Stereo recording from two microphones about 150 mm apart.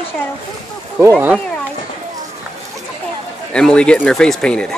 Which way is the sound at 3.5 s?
5° left (ahead or behind).